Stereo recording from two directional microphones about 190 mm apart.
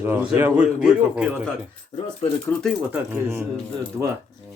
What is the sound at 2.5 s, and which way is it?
Speech, 10° left (ahead or behind).